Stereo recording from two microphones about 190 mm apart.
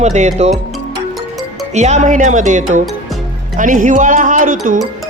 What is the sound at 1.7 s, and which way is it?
Speech, 35° right (ahead or behind).